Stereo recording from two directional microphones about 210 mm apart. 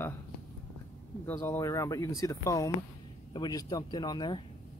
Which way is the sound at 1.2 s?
10° left (ahead or behind).